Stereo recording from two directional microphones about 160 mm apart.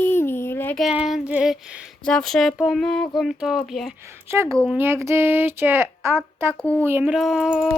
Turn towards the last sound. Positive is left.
turn(degrees=-5)  # may be behind; listen again after turning